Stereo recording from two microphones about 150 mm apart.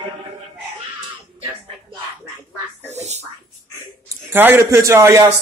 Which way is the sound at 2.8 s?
50° right (ahead or behind).